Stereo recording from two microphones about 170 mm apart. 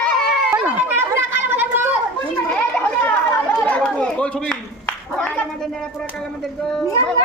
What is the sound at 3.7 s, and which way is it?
Chatter, 5° left (ahead or behind).